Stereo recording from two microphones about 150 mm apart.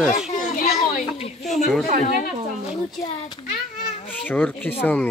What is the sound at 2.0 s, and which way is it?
Speech, 60° left (ahead or behind).